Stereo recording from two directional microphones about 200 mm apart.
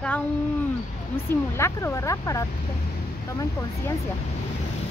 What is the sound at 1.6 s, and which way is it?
Speech, 15° left (ahead or behind).